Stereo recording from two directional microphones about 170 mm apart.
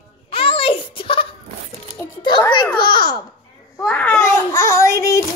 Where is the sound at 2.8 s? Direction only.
30° left (ahead or behind).